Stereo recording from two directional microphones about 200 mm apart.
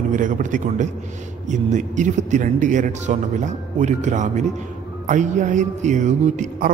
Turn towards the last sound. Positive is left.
turn(degrees=-35)  # may be behind; listen again after turning